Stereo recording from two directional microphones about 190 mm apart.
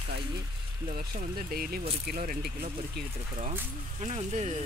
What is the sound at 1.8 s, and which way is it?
Speech, 35° right (ahead or behind).